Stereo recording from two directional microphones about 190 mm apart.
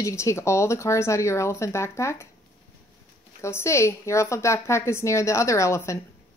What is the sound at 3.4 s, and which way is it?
A woman's voice, 15° left (ahead or behind).